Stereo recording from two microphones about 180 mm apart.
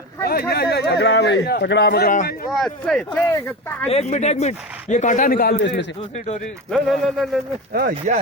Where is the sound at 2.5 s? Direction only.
Centre (ahead or behind).